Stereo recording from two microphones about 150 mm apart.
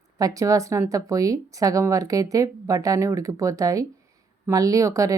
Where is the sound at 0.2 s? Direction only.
25° right (ahead or behind).